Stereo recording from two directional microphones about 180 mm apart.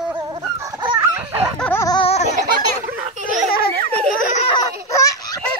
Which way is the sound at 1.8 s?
25° left (ahead or behind).